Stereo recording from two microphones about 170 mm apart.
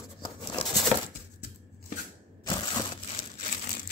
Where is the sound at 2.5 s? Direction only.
25° left (ahead or behind).